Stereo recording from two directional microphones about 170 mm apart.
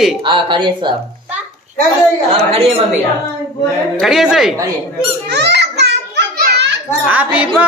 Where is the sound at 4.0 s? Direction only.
Centre (ahead or behind).